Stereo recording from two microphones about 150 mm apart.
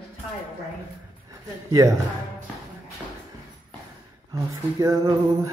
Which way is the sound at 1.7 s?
20° right (ahead or behind).